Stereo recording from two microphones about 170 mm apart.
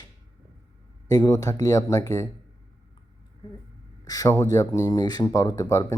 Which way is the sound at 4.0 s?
20° left (ahead or behind).